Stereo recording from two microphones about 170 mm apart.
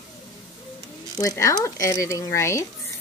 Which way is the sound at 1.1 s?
20° left (ahead or behind).